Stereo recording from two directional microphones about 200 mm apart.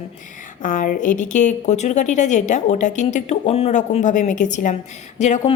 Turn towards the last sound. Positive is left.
turn(degrees=35)  # may be behind; listen again after turning